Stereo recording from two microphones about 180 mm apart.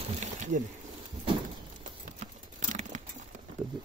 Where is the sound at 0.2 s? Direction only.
45° right (ahead or behind).